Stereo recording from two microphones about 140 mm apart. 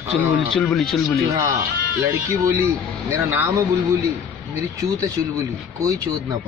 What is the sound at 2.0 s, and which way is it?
Speech, 20° right (ahead or behind).